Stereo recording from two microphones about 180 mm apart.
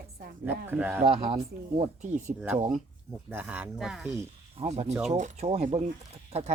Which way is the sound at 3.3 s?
10° right (ahead or behind).